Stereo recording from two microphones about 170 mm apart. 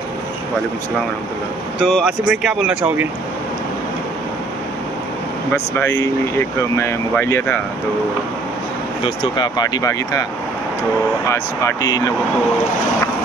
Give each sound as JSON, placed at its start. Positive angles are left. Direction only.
{"t": 1.8, "sound": "speech", "side_deg": 0}
{"t": 5.5, "sound": "speech", "side_deg": 15}
{"t": 9.0, "sound": "speech", "side_deg": 30}
{"t": 11.2, "sound": "speech", "side_deg": 20}